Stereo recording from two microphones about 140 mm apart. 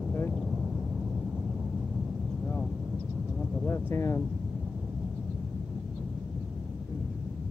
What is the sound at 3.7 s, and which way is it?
Speech, 20° left (ahead or behind).